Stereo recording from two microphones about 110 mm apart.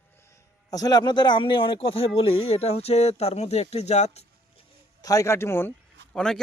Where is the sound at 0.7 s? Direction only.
35° left (ahead or behind); by 4.3 s 85° left.